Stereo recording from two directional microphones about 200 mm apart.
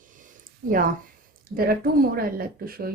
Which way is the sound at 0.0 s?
40° right (ahead or behind).